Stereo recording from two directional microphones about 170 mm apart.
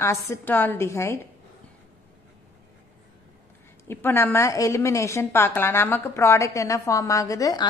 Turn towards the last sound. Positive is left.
turn(degrees=20)  # may be behind; listen again after turning